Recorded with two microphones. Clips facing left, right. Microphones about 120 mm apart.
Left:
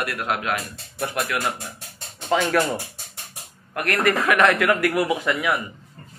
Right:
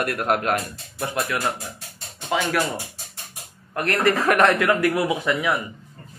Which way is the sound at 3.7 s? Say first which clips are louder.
Right 1 dB; 25° right (ahead or behind).